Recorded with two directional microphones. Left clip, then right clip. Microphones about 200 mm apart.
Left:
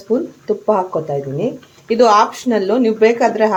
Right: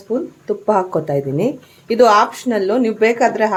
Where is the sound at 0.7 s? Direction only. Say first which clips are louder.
Right 1 dB; 20° right (ahead or behind).